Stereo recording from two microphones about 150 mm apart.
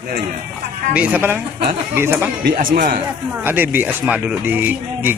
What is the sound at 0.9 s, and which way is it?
Speech, 10° right (ahead or behind).